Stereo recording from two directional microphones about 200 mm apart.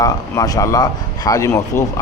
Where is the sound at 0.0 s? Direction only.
20° left (ahead or behind).